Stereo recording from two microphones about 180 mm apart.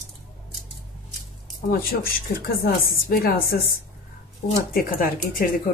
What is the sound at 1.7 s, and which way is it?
Speech, 55° left (ahead or behind).